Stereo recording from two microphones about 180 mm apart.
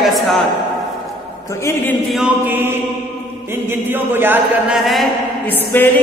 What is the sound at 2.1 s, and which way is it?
Chant, 5° right (ahead or behind).